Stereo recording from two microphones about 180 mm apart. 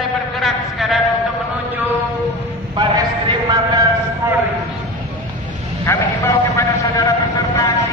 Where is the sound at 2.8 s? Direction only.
25° right (ahead or behind).